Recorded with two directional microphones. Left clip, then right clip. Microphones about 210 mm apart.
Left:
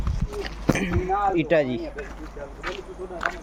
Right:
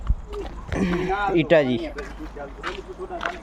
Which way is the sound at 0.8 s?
35° right (ahead or behind).